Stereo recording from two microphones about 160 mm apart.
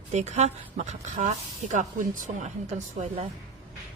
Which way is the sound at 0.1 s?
45° right (ahead or behind).